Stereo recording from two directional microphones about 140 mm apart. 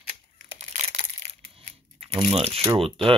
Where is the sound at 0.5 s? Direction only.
55° right (ahead or behind).